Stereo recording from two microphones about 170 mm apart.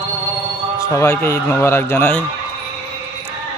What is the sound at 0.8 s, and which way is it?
Speech, 15° left (ahead or behind).